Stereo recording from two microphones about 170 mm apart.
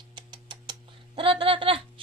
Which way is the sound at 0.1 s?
25° right (ahead or behind).